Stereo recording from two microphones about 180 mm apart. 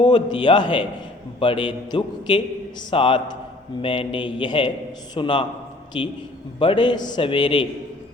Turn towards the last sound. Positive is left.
turn(degrees=25)  # may be behind; listen again after turning